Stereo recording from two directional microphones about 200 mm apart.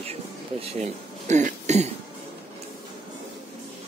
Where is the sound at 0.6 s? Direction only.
30° right (ahead or behind).